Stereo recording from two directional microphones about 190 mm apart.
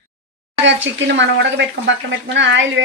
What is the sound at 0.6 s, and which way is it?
A woman's voice, 70° right (ahead or behind).